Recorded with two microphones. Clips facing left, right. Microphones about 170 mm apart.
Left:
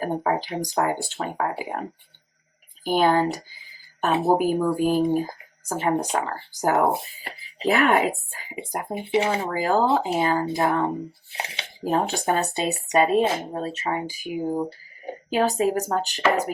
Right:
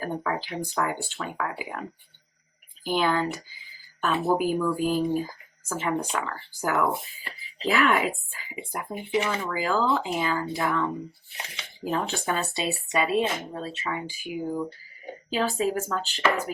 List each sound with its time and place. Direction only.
0.0 s speech: 40° left (ahead or behind)
2.9 s speech: 40° left (ahead or behind)
4.1 s speech: 30° left (ahead or behind)
4.4 s speech: 40° left (ahead or behind)
11.3 s speech: 80° left
11.6 s speech: 40° left (ahead or behind)